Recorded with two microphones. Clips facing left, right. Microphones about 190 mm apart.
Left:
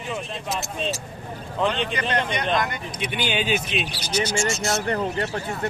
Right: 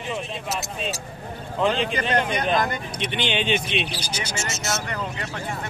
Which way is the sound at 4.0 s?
30° right (ahead or behind).